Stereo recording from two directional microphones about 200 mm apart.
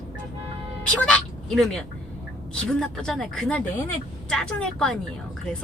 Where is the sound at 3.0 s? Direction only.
5° left (ahead or behind).